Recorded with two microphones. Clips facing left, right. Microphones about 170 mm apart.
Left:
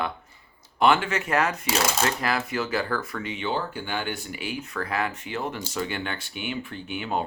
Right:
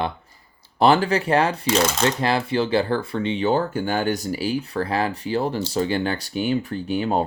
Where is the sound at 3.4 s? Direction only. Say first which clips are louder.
Right 7 dB; 45° right (ahead or behind).